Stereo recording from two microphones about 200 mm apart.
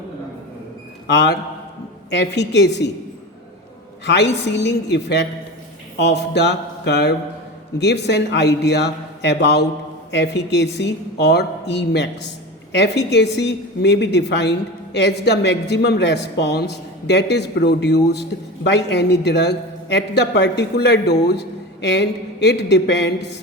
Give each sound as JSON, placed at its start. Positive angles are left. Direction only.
{"t": 1.0, "sound": "a man's voice", "side_deg": 60}
{"t": 4.0, "sound": "a man's voice", "side_deg": 60}